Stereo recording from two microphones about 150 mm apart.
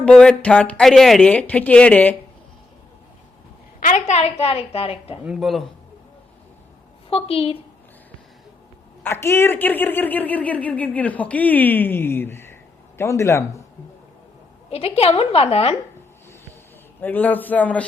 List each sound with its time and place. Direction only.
0.0 s speech: 5° left (ahead or behind)
3.8 s a woman's voice: 60° left (ahead or behind); by 5.2 s 40° left (ahead or behind)
5.2 s speech: 5° right (ahead or behind)
7.1 s a woman's voice: 40° left (ahead or behind)
9.0 s speech: 15° left (ahead or behind)
14.7 s a woman's voice: 40° left (ahead or behind)
17.0 s speech: 10° left (ahead or behind)